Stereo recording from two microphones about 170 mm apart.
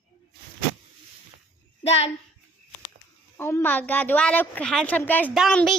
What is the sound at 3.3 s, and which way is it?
A woman's voice, 15° left (ahead or behind).